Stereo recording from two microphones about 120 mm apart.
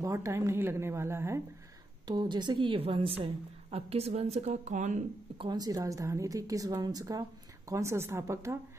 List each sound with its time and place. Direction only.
0.0 s a woman's voice: 25° right (ahead or behind)
2.0 s a woman's voice: 40° right (ahead or behind); by 5.0 s 85° right
5.4 s a woman's voice: 35° right (ahead or behind)